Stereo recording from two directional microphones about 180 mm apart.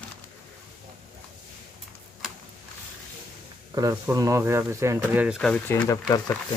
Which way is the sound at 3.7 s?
20° right (ahead or behind).